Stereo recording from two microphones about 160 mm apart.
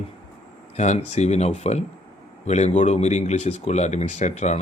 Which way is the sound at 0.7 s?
45° left (ahead or behind).